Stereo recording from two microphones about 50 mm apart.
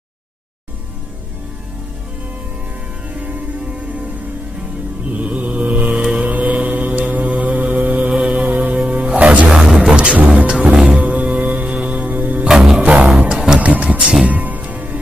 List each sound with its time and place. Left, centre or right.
5.1 s mantra: right
8.2 s music: right
8.7 s music: right
12.4 s music: centre
12.8 s music: right
13.3 s music: centre
13.6 s music: right